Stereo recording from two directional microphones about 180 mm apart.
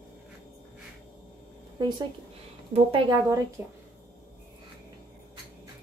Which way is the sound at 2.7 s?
30° right (ahead or behind).